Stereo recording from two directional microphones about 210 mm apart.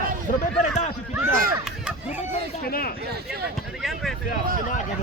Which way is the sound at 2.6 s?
45° left (ahead or behind).